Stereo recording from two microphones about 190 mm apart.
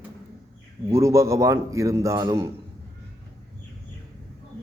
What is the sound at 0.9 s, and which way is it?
A man's voice, 15° right (ahead or behind).